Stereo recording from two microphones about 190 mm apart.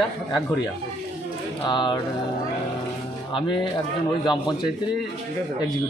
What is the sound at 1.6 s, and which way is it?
Speech, 25° left (ahead or behind).